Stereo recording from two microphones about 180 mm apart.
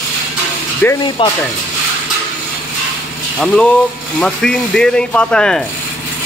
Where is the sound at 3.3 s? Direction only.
5° left (ahead or behind).